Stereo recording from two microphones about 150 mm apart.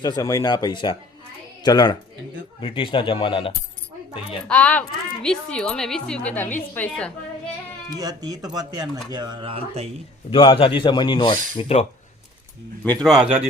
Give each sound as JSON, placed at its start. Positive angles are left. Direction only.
{"t": 0.0, "sound": "a man's voice", "side_deg": 25}
{"t": 4.4, "sound": "speech", "side_deg": 10}
{"t": 7.9, "sound": "speech", "side_deg": -25}
{"t": 10.2, "sound": "a man's voice", "side_deg": 35}
{"t": 12.8, "sound": "speech", "side_deg": 10}